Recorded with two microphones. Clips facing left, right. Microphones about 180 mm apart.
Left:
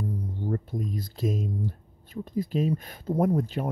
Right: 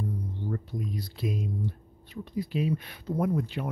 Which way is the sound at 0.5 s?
45° left (ahead or behind).